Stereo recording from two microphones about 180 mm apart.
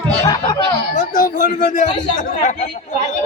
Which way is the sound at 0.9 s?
45° left (ahead or behind).